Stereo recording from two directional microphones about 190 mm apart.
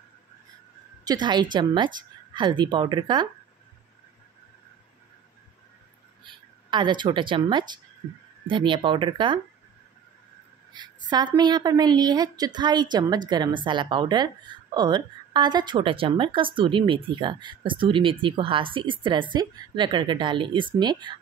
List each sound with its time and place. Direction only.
1.0 s a woman's voice: 20° right (ahead or behind)
6.2 s a woman's voice: 25° right (ahead or behind)
10.7 s a woman's voice: 20° right (ahead or behind)